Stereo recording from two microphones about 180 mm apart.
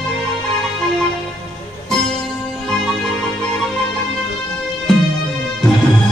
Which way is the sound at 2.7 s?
5° left (ahead or behind).